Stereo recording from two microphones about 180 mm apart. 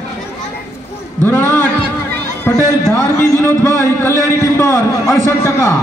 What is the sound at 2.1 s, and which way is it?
A man's voice, 10° left (ahead or behind).